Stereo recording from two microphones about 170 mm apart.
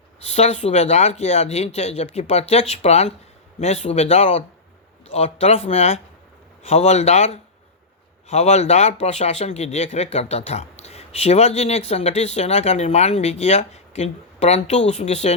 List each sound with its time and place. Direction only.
0.3 s speech: 40° left (ahead or behind)